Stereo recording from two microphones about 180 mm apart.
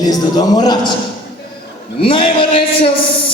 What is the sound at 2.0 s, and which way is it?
Music, 30° left (ahead or behind).